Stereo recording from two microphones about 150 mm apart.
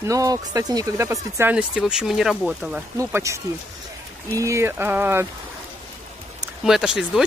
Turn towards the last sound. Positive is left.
turn(degrees=-5)  # may be behind; listen again after turning